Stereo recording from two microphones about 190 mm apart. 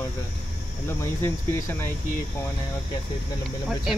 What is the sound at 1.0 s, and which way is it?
Speech, 15° left (ahead or behind).